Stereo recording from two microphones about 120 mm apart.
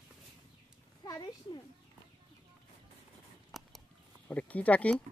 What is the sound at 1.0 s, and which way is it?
Speech, 40° left (ahead or behind).